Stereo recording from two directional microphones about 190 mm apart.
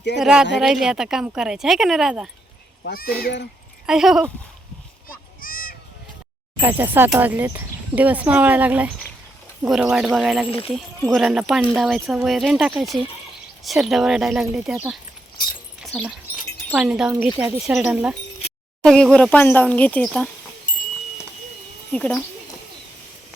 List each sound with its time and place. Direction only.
0.2 s speech: 5° right (ahead or behind)
2.8 s speech: 50° left (ahead or behind)
3.8 s speech: 5° right (ahead or behind)
5.4 s a sound: 50° left (ahead or behind)
6.6 s speech: 10° right (ahead or behind)
16.7 s speech: 5° right (ahead or behind)
20.7 s wind chime: 45° left (ahead or behind)
21.9 s speech: 5° left (ahead or behind)